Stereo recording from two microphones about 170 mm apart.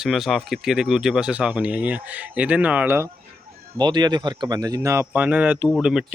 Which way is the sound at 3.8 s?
25° right (ahead or behind).